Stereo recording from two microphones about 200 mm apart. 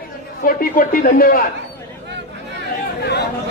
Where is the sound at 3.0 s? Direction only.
55° left (ahead or behind).